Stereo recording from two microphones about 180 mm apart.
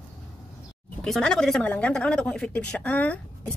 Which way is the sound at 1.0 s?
Centre (ahead or behind).